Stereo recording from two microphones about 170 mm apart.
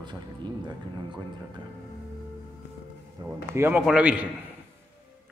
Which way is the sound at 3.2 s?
15° right (ahead or behind).